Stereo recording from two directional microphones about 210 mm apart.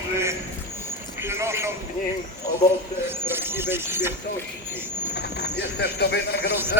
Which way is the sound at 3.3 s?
10° right (ahead or behind).